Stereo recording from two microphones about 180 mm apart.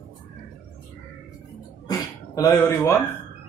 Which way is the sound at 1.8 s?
20° left (ahead or behind).